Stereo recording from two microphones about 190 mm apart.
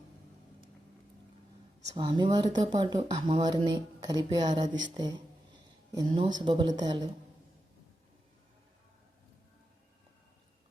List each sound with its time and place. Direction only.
2.0 s speech: 25° right (ahead or behind)